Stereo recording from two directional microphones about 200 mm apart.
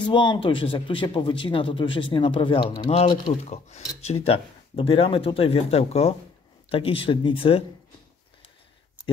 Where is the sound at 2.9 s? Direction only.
35° left (ahead or behind).